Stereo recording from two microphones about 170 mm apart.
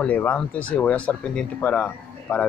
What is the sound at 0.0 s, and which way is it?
A man's voice, 10° left (ahead or behind).